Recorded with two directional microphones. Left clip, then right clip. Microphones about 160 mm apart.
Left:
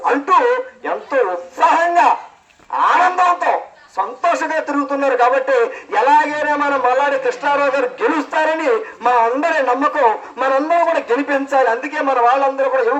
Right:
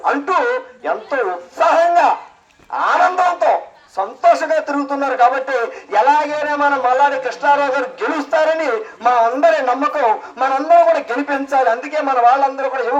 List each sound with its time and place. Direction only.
0.0 s speech: 35° right (ahead or behind)